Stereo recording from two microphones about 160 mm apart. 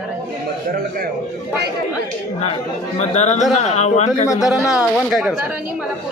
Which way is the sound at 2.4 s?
40° left (ahead or behind).